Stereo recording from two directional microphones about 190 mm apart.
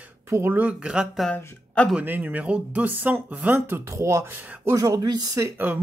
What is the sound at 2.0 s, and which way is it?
Speech, 10° right (ahead or behind).